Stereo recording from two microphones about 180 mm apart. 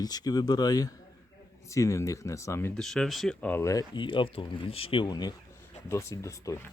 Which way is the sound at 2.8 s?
Centre (ahead or behind).